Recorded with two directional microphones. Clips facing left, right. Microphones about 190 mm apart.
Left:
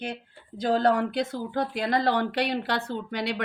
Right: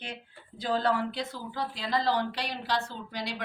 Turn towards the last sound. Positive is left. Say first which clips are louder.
# left 7 dB
turn(degrees=60)  # may be behind; listen again after turning